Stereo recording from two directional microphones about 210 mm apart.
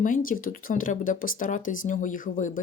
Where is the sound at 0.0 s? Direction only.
40° left (ahead or behind).